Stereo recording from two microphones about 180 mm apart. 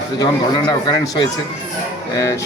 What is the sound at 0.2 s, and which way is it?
Speech, 20° left (ahead or behind).